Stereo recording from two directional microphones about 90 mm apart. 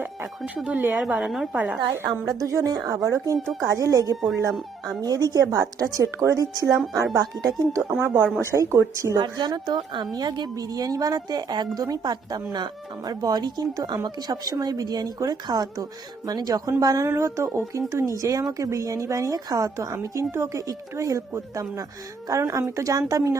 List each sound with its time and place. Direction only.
0.0 s speech: 20° right (ahead or behind)
1.2 s a woman's voice: centre (ahead or behind)
1.5 s speech: 15° right (ahead or behind)
2.4 s a woman's voice: 40° right (ahead or behind)
3.3 s a woman's voice: centre (ahead or behind)
3.6 s a woman's voice: 35° right (ahead or behind)
9.1 s a woman's voice: 55° right (ahead or behind); by 23.4 s 35° right (ahead or behind)